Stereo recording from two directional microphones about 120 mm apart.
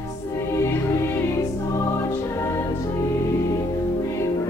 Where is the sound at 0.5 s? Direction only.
25° left (ahead or behind).